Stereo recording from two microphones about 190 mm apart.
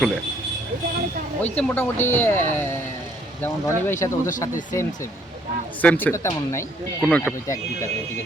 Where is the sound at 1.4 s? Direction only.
10° left (ahead or behind).